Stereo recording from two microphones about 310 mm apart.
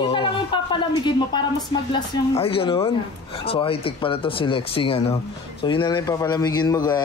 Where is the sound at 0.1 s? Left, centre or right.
Centre.